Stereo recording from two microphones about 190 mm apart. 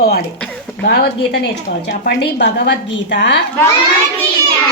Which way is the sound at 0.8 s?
60° left (ahead or behind).